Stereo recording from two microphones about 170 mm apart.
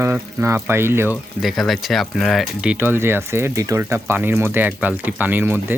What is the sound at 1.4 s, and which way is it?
Speech, centre (ahead or behind).